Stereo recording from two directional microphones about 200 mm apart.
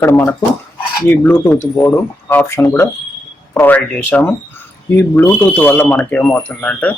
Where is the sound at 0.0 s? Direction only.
10° left (ahead or behind).